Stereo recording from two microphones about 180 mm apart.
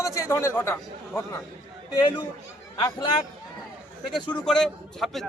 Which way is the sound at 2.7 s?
25° left (ahead or behind).